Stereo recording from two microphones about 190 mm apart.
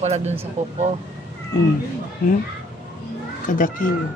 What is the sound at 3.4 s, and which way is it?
Speech, 45° left (ahead or behind).